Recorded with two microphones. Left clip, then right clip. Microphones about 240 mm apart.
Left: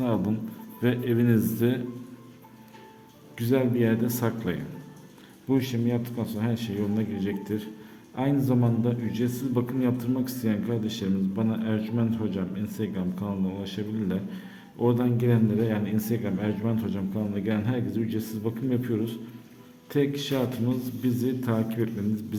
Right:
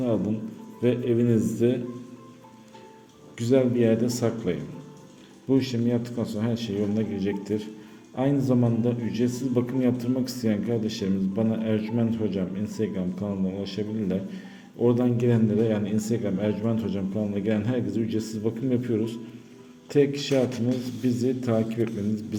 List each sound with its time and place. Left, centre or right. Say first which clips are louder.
0.8 s speech: right 2 dB; centre
3.3 s a man's voice: right 3 dB; centre